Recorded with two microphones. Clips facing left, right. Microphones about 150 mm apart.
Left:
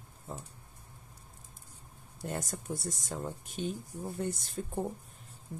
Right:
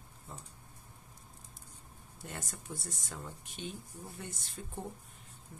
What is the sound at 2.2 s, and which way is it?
Speech, 40° left (ahead or behind).